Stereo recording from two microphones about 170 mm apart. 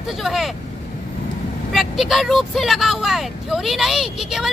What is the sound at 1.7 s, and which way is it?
Speech, centre (ahead or behind).